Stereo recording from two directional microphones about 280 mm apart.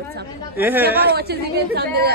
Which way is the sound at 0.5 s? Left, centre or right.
Centre.